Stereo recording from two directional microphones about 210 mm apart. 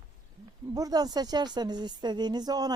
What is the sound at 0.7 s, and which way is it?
Speech, 15° right (ahead or behind).